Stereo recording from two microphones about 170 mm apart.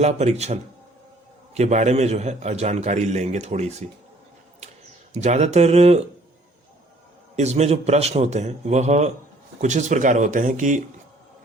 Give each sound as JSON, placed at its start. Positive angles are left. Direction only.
{"t": 0.0, "sound": "a man's voice", "side_deg": -40}
{"t": 5.2, "sound": "a man's voice", "side_deg": -40}
{"t": 7.3, "sound": "a man's voice", "side_deg": -40}